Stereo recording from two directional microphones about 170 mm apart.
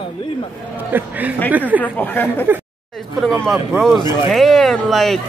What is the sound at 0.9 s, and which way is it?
Speech, 10° right (ahead or behind).